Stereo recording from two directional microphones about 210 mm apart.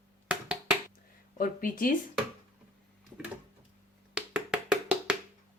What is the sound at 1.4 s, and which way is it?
Speech, 40° left (ahead or behind).